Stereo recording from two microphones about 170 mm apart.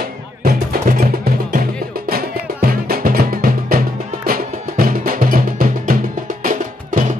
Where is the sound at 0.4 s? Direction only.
55° right (ahead or behind).